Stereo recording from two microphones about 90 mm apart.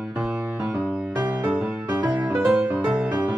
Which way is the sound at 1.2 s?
15° right (ahead or behind).